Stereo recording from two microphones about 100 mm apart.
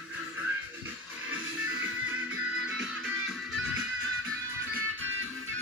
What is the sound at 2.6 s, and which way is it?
Music, 10° right (ahead or behind).